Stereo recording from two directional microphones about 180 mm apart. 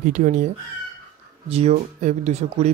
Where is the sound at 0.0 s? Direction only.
45° right (ahead or behind).